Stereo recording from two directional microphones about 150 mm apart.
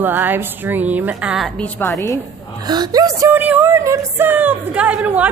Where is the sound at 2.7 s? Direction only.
25° right (ahead or behind).